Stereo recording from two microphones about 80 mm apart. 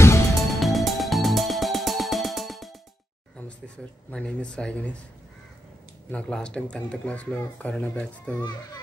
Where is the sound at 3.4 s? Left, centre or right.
Centre.